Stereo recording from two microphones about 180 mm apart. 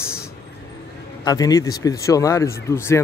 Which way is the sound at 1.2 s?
20° left (ahead or behind).